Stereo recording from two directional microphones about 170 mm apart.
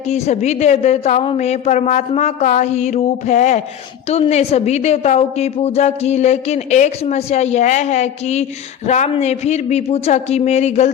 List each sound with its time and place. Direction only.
0.1 s a woman's voice: 40° left (ahead or behind)